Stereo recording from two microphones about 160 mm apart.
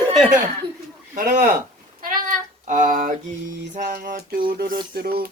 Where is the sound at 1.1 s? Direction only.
55° right (ahead or behind).